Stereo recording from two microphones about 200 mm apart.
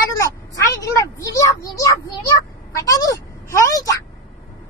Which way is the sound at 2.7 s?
15° left (ahead or behind).